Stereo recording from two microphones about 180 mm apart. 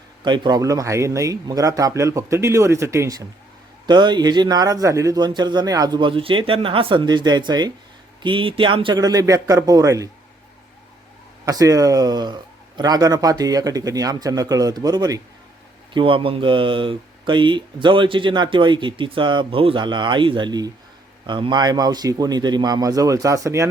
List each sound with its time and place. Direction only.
0.3 s speech: 25° right (ahead or behind)
11.4 s speech: 20° right (ahead or behind)